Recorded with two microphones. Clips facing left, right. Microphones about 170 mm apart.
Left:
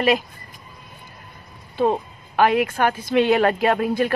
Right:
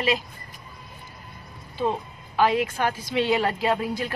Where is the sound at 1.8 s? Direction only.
60° left (ahead or behind).